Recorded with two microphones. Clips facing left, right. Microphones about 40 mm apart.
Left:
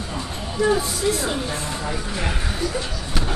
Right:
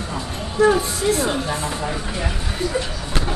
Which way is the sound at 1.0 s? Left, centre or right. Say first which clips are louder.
Right 2 dB; centre.